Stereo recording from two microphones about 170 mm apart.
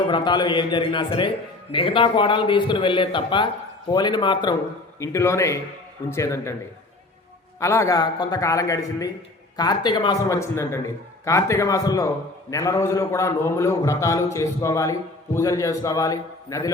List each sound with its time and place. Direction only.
0.1 s a man's voice: 25° left (ahead or behind)
4.9 s a man's voice: 15° left (ahead or behind)
7.6 s a man's voice: 15° left (ahead or behind)